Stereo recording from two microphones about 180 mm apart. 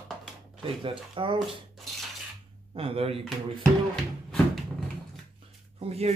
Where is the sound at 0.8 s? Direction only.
30° right (ahead or behind).